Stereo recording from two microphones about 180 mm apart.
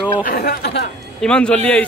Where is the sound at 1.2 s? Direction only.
5° left (ahead or behind).